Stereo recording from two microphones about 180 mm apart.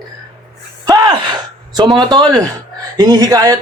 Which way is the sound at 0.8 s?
20° right (ahead or behind).